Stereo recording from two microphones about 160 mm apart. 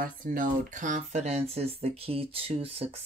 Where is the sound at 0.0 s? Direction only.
60° right (ahead or behind).